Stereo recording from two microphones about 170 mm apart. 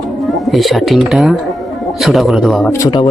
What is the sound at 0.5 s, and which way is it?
Speech, centre (ahead or behind).